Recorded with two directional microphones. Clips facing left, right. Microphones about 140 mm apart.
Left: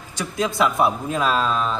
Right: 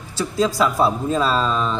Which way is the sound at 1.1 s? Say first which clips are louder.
Right 2 dB; 10° left (ahead or behind).